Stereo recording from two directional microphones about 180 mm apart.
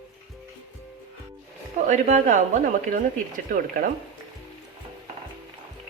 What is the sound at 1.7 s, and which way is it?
Speech, 40° right (ahead or behind).